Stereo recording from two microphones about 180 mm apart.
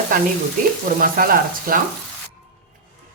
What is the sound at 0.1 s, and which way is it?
Speech, 50° right (ahead or behind).